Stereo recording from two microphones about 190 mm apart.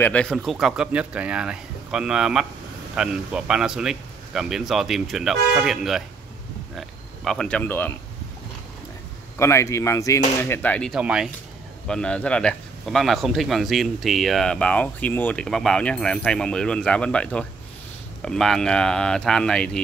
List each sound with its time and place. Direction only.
0.0 s a man's voice: 5° left (ahead or behind)
9.4 s a man's voice: 15° left (ahead or behind)